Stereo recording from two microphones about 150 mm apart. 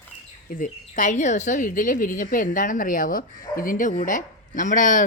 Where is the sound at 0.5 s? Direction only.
60° left (ahead or behind).